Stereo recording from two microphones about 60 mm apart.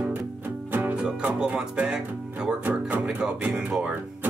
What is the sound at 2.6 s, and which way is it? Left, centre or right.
Music, right.